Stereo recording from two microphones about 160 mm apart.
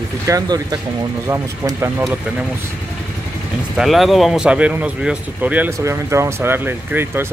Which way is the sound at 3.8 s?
Centre (ahead or behind).